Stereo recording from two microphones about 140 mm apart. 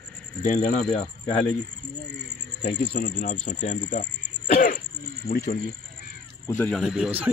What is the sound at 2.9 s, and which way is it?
Speech, 70° left (ahead or behind).